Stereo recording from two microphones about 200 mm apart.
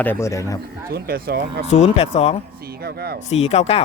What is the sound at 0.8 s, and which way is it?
Speech, 50° right (ahead or behind).